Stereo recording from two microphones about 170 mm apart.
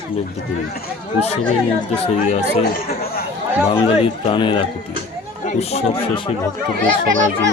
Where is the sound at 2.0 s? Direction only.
40° left (ahead or behind).